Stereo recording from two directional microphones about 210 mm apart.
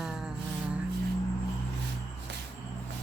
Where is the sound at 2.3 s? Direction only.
55° right (ahead or behind).